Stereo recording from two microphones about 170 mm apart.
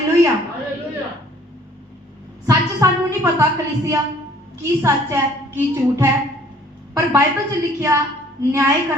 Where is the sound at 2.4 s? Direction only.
20° right (ahead or behind).